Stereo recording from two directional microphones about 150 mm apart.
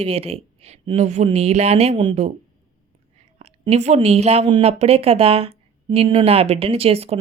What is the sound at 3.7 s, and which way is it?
A woman's voice, 45° right (ahead or behind).